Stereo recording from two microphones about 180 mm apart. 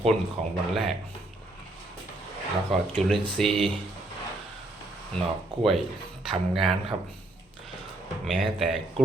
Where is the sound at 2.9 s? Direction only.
5° left (ahead or behind).